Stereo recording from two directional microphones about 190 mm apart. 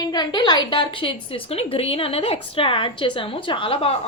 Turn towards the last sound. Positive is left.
turn(degrees=30)  # may be behind; listen again after turning